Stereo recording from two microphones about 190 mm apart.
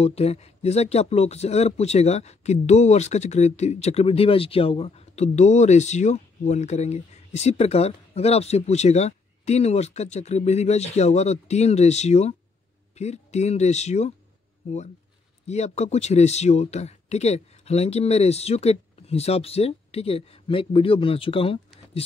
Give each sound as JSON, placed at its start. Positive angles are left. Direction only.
{"t": 0.0, "sound": "speech", "side_deg": 35}
{"t": 15.4, "sound": "speech", "side_deg": 35}